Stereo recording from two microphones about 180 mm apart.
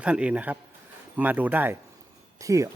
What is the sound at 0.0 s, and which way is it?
Speech, 5° right (ahead or behind).